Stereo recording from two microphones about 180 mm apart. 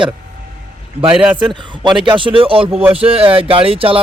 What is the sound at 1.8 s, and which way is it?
Speech, 25° right (ahead or behind).